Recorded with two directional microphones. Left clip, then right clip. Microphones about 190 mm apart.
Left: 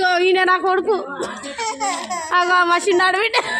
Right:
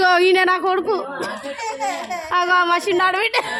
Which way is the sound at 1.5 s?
20° left (ahead or behind).